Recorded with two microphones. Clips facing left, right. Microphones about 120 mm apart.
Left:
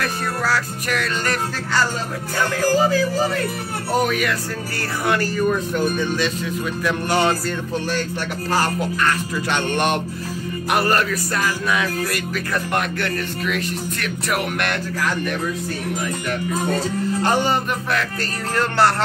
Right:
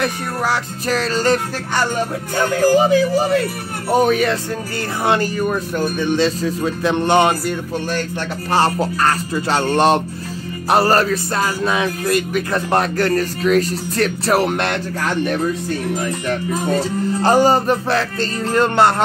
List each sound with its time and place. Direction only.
0.0 s speech: 20° right (ahead or behind)
0.8 s speech: 35° right (ahead or behind)
12.7 s speech: 35° right (ahead or behind)
17.2 s speech: 40° right (ahead or behind); by 19.0 s 20° right (ahead or behind)